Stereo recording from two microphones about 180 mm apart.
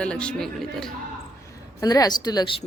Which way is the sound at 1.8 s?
20° left (ahead or behind).